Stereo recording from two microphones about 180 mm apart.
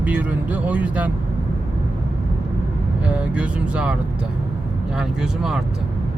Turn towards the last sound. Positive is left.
turn(degrees=-5)  # may be behind; listen again after turning